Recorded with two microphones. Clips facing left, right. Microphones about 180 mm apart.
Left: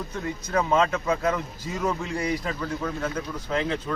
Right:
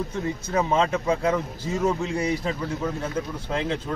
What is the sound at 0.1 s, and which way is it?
Speech, 25° right (ahead or behind).